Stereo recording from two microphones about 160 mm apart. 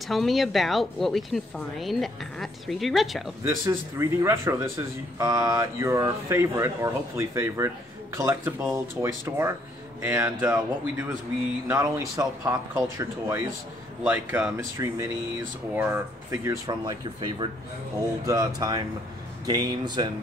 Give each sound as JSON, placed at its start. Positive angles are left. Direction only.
{"t": 0.1, "sound": "a woman's voice", "side_deg": 0}
{"t": 3.4, "sound": "a man's voice", "side_deg": -15}